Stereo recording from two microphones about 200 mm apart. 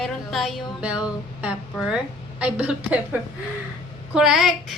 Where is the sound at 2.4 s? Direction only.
5° right (ahead or behind).